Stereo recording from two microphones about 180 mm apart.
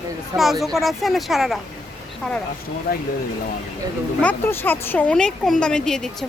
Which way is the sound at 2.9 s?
55° left (ahead or behind).